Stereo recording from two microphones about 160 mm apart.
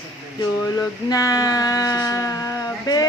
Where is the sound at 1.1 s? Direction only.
20° left (ahead or behind).